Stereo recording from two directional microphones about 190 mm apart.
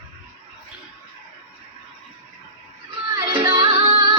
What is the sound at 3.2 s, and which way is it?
Music, 25° right (ahead or behind).